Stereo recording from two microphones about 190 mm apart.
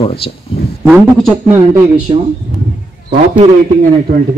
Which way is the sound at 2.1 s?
25° right (ahead or behind).